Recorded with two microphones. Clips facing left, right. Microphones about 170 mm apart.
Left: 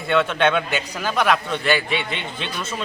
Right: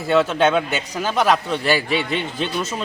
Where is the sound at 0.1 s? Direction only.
5° right (ahead or behind).